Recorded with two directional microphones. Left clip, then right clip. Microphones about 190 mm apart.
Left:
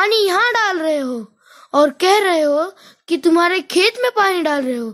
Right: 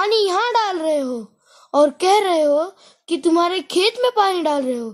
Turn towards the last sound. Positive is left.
turn(degrees=30)  # may be behind; listen again after turning